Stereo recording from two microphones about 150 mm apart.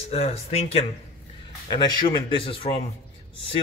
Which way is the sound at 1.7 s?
35° left (ahead or behind).